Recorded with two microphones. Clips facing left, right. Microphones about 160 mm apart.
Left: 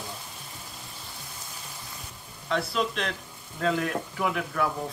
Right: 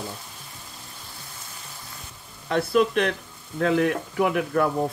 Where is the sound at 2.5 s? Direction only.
55° right (ahead or behind).